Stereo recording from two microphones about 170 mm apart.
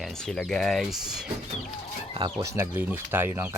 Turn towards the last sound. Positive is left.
turn(degrees=-10)  # may be behind; listen again after turning